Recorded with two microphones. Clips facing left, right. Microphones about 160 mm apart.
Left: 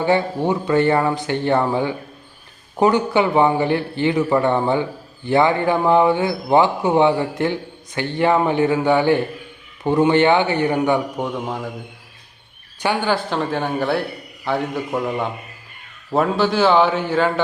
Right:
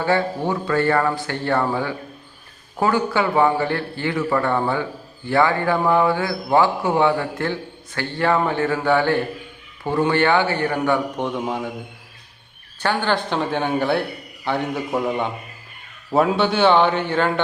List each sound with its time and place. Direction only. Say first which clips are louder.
0.0 s a man's voice: left 2 dB; 20° left (ahead or behind)
11.2 s a man's voice: right 1 dB; centre (ahead or behind)
12.8 s a man's voice: left 1 dB; 10° left (ahead or behind)